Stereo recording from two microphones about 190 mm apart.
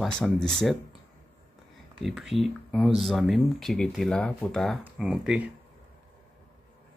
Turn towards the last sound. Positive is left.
turn(degrees=-5)  # may be behind; listen again after turning